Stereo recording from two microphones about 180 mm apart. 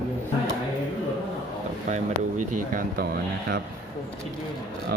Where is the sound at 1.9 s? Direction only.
45° right (ahead or behind).